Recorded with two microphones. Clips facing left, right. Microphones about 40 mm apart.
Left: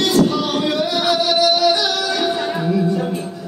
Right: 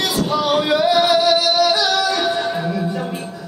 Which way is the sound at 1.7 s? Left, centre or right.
Centre.